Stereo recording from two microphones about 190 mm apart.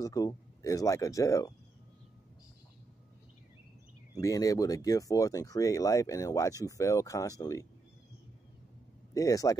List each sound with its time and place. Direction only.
0.0 s speech: 20° left (ahead or behind)
4.2 s speech: 20° left (ahead or behind)
9.1 s speech: 20° left (ahead or behind)